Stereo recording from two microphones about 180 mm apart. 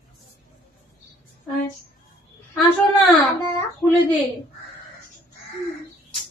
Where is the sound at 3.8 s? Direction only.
10° left (ahead or behind).